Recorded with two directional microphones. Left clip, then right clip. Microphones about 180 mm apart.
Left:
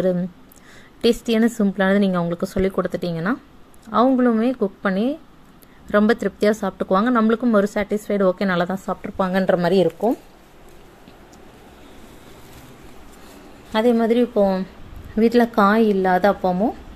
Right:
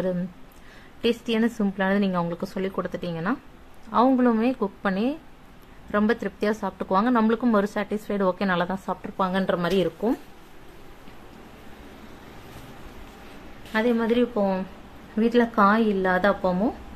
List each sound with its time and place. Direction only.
1.0 s a woman's voice: 25° left (ahead or behind)
4.1 s speech: 10° left (ahead or behind); by 9.8 s 25° left (ahead or behind)
13.7 s a woman's voice: 30° left (ahead or behind)